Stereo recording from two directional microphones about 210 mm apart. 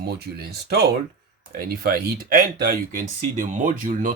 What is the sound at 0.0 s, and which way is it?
Speech, 50° right (ahead or behind).